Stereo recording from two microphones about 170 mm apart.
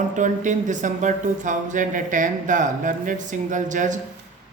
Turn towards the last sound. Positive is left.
turn(degrees=-45)  # may be behind; listen again after turning